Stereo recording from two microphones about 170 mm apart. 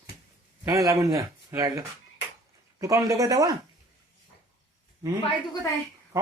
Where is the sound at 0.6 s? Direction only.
20° right (ahead or behind).